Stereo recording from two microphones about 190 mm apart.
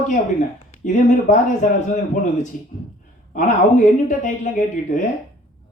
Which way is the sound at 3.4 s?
45° left (ahead or behind).